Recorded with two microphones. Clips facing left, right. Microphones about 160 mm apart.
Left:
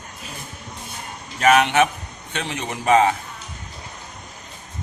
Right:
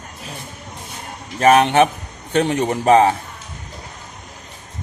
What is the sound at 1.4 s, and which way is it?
A man's voice, 35° right (ahead or behind).